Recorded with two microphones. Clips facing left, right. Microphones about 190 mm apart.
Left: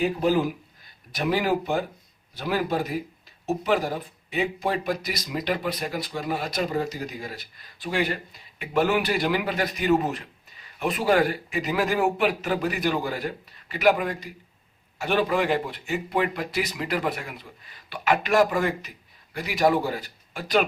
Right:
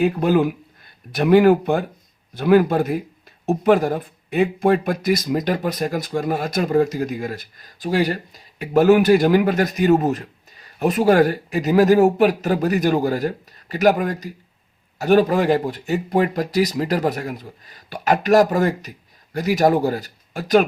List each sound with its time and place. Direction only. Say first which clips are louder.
0.0 s speech: right 5 dB; 60° right (ahead or behind); by 20.7 s 45° right (ahead or behind)